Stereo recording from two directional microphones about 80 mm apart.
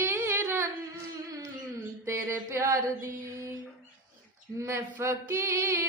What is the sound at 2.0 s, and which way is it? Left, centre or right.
Mantra, right.